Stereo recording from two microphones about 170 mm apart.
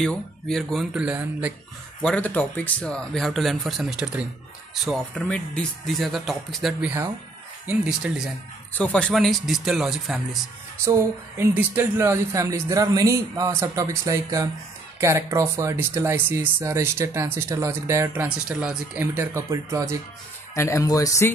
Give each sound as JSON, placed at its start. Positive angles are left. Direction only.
{"t": 0.0, "sound": "speech", "side_deg": 5}
{"t": 2.0, "sound": "speech", "side_deg": 5}
{"t": 4.8, "sound": "speech", "side_deg": 5}
{"t": 8.7, "sound": "speech", "side_deg": 5}
{"t": 10.8, "sound": "speech", "side_deg": -15}
{"t": 20.5, "sound": "speech", "side_deg": 15}